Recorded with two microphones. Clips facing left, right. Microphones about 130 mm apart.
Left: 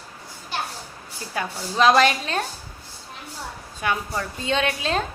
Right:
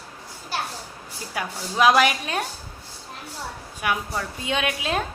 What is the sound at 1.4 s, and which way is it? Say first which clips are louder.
A woman's voice: left 1 dB; 10° right (ahead or behind).